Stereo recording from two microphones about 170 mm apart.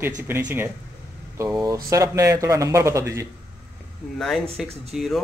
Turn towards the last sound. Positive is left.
turn(degrees=0)  # may be behind; listen again after turning